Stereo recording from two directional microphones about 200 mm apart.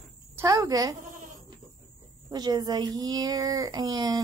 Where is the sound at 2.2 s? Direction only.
20° right (ahead or behind).